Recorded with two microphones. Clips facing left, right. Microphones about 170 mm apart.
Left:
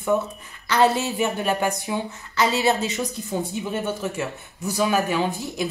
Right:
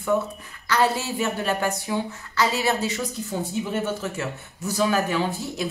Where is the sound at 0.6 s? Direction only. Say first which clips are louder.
Left 3 dB; 20° left (ahead or behind).